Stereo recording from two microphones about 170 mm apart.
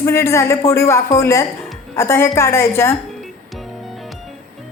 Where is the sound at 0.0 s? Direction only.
15° left (ahead or behind).